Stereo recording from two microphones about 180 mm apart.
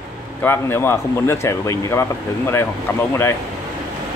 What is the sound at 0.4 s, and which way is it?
Speech, 10° left (ahead or behind).